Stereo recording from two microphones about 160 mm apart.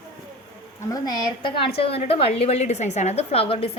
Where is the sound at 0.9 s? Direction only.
25° left (ahead or behind).